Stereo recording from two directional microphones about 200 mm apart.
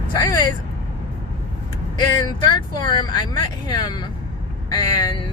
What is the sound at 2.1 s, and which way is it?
Speech, 20° left (ahead or behind).